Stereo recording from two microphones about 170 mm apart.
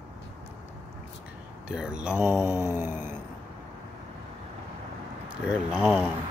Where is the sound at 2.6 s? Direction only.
15° right (ahead or behind).